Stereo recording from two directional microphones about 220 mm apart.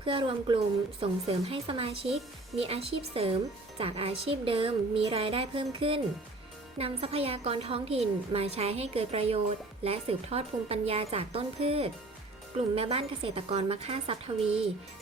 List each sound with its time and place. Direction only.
0.0 s a woman's voice: 25° right (ahead or behind)